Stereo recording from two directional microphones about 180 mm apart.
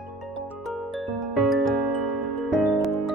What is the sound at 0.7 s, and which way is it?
Music, centre (ahead or behind).